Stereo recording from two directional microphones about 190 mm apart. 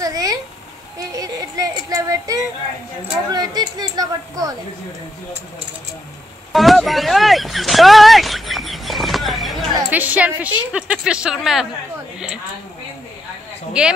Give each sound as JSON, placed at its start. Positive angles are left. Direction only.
{"t": 0.0, "sound": "a sound", "side_deg": -20}
{"t": 0.9, "sound": "child singing", "side_deg": -20}
{"t": 3.3, "sound": "speech", "side_deg": -20}
{"t": 6.5, "sound": "a sound", "side_deg": 0}
{"t": 9.8, "sound": "a woman's voice", "side_deg": -10}
{"t": 13.8, "sound": "speech", "side_deg": -5}